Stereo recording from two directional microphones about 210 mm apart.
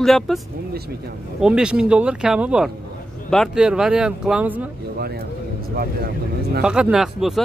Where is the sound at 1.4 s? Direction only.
5° right (ahead or behind).